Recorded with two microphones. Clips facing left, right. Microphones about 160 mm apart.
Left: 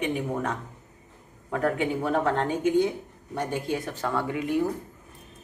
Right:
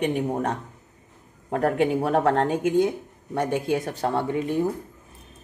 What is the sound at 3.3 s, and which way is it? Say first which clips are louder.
Speech: right 5 dB; 65° right (ahead or behind).